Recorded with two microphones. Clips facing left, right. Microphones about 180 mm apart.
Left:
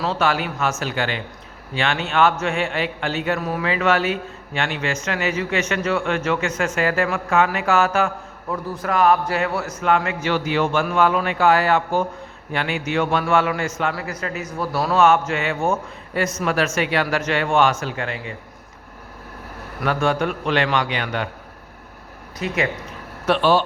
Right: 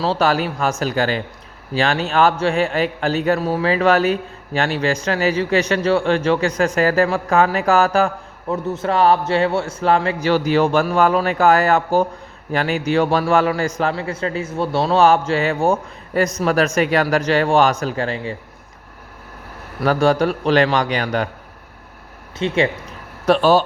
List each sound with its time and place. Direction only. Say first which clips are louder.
0.0 s a man's voice: right 4 dB; 35° right (ahead or behind)
19.8 s a man's voice: right 5 dB; 35° right (ahead or behind)
22.4 s speech: right 5 dB; 30° right (ahead or behind)
23.2 s a man's voice: right 3 dB; 40° right (ahead or behind)